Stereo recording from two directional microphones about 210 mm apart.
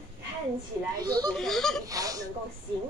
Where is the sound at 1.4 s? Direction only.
Centre (ahead or behind).